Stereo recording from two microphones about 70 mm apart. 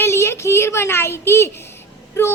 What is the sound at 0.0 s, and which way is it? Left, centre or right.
A child's voice, left.